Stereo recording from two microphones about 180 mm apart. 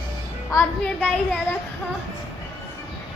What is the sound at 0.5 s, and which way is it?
Speech, 15° left (ahead or behind).